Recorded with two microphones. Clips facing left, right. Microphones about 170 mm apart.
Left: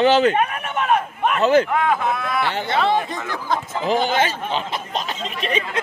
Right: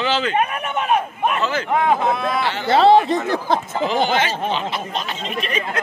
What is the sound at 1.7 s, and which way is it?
Speech, 25° right (ahead or behind).